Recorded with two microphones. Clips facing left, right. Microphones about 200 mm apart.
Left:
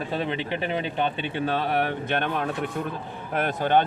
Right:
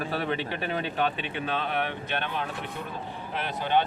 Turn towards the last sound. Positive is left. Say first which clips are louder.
# left 5 dB
turn(degrees=50)  # may be behind; listen again after turning